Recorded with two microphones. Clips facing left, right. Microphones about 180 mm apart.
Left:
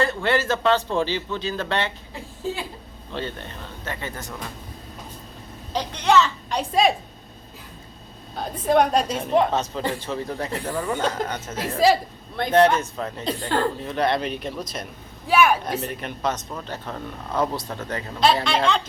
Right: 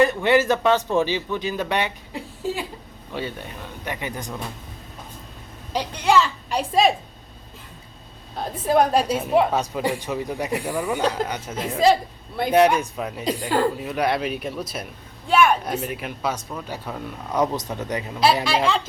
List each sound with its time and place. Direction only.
0.0 s a woman's voice: 15° right (ahead or behind)
3.1 s a woman's voice: 10° right (ahead or behind)
5.7 s a woman's voice: 10° right (ahead or behind)
8.4 s a woman's voice: centre (ahead or behind)
11.5 s a woman's voice: 5° left (ahead or behind)
12.4 s a woman's voice: 10° right (ahead or behind)
15.3 s a woman's voice: 5° left (ahead or behind)